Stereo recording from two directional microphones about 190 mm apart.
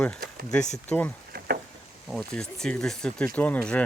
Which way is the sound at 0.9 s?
10° left (ahead or behind).